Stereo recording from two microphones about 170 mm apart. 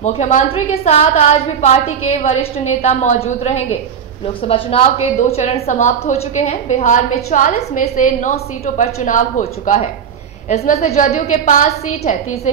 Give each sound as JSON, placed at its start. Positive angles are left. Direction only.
{"t": 0.0, "sound": "a woman's voice", "side_deg": 40}